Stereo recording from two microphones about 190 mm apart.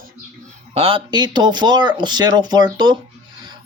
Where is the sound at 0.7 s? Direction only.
30° right (ahead or behind).